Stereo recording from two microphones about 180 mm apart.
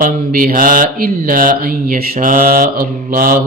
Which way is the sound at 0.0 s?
50° right (ahead or behind).